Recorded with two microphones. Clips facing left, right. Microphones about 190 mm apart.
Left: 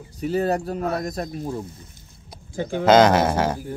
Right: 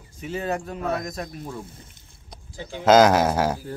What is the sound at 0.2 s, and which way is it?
Speech, 40° left (ahead or behind).